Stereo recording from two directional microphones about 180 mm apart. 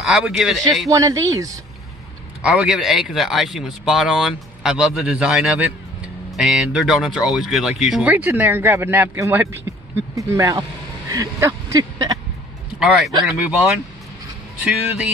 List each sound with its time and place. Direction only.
0.0 s speech: centre (ahead or behind)
0.8 s speech: 20° right (ahead or behind)
2.4 s speech: 5° right (ahead or behind)
12.7 s speech: 5° right (ahead or behind)